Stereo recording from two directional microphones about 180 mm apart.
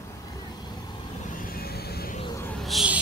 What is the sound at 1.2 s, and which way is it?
Vehicle, 50° left (ahead or behind).